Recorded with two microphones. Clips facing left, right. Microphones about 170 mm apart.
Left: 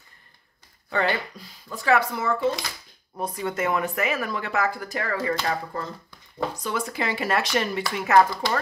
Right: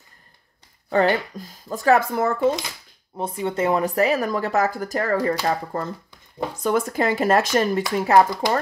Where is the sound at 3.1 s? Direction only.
25° right (ahead or behind); by 7.8 s 45° right (ahead or behind).